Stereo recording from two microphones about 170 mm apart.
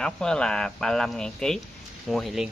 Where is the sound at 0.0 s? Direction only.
5° left (ahead or behind).